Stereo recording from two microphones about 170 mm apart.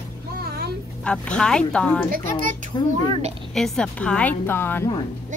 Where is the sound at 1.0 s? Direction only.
5° left (ahead or behind).